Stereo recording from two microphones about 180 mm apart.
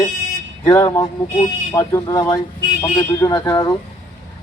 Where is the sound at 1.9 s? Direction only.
20° left (ahead or behind).